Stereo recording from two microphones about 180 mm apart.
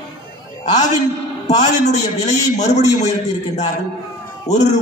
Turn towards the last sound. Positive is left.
turn(degrees=40)  # may be behind; listen again after turning